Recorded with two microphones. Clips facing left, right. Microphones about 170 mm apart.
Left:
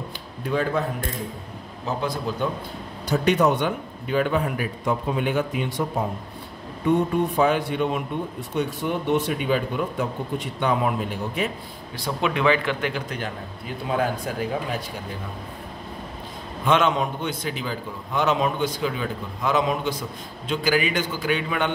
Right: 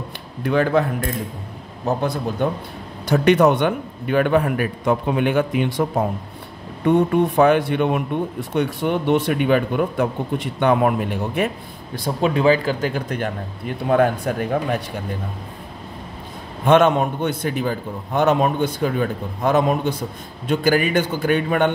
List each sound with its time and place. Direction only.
0.4 s speech: 70° right (ahead or behind)
1.9 s a man's voice: 50° right (ahead or behind)
7.3 s a man's voice: 65° right (ahead or behind)
12.0 s speech: 35° right (ahead or behind)
13.1 s a man's voice: 55° right (ahead or behind)
16.6 s a man's voice: 50° right (ahead or behind)